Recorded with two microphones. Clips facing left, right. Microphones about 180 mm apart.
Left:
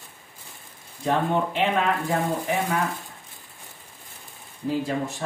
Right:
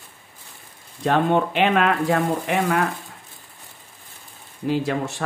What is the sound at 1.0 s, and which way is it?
Speech, 75° right (ahead or behind).